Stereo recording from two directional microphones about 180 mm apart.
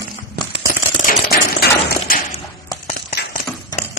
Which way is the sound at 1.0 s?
60° left (ahead or behind).